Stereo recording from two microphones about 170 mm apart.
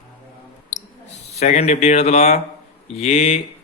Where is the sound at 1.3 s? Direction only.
40° left (ahead or behind).